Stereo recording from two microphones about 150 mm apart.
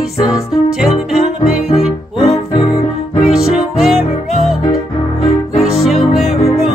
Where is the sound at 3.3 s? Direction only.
Centre (ahead or behind).